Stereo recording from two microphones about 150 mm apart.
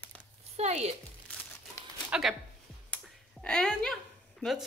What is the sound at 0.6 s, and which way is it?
Speech, 45° right (ahead or behind).